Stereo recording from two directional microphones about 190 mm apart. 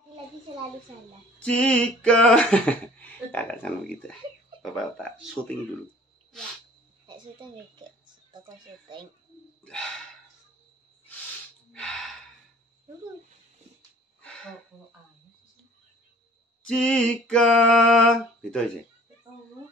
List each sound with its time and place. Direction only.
1.4 s speech: 5° left (ahead or behind)
8.3 s speech: 25° right (ahead or behind)
9.6 s bird: 5° left (ahead or behind)
11.7 s gasp: 5° left (ahead or behind)
16.6 s speech: 5° left (ahead or behind)